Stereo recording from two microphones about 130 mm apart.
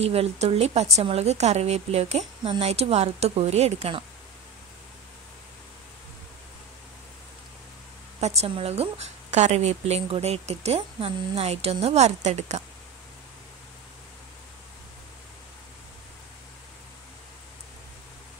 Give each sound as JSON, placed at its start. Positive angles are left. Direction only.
{"t": 0.0, "sound": "a woman's voice", "side_deg": -50}
{"t": 8.2, "sound": "a woman's voice", "side_deg": -55}